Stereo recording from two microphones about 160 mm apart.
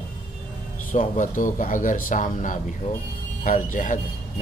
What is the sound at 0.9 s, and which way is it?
Speech, 55° left (ahead or behind).